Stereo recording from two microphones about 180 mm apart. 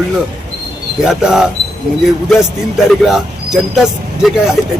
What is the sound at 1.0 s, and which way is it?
Speech, 5° right (ahead or behind).